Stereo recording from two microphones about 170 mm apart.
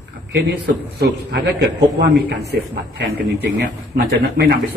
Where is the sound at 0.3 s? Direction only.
75° right (ahead or behind).